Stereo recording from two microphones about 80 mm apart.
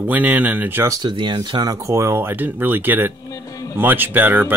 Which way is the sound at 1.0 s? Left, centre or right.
Right.